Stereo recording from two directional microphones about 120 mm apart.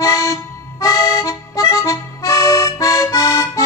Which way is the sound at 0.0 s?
30° left (ahead or behind).